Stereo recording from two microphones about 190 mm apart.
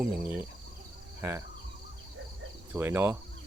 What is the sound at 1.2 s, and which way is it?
Speech, 15° right (ahead or behind).